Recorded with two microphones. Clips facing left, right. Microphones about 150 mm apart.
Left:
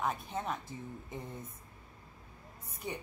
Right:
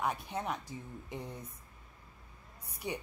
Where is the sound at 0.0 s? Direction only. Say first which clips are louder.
Even; 15° right (ahead or behind).